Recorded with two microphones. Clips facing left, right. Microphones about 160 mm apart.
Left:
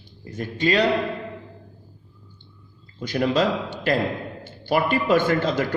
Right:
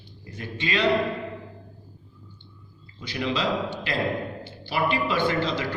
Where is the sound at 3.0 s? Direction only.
45° left (ahead or behind).